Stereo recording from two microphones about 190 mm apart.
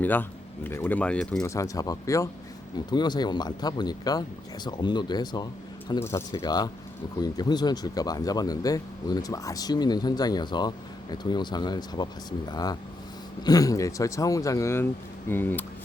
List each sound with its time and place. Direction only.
0.0 s speech: 10° left (ahead or behind)
1.5 s speech: 15° left (ahead or behind)